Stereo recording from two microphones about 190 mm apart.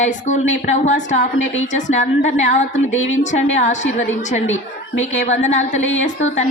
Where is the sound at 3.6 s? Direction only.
40° left (ahead or behind).